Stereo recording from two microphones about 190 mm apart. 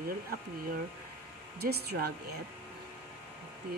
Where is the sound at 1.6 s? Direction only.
55° right (ahead or behind).